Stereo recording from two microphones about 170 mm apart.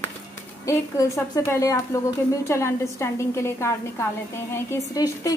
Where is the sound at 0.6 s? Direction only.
15° left (ahead or behind).